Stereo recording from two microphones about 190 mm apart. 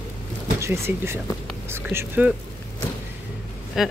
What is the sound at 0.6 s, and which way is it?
Speech, 15° right (ahead or behind).